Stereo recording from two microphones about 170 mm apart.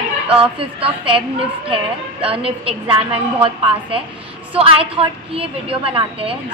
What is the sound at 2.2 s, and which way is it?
Speech, 35° right (ahead or behind).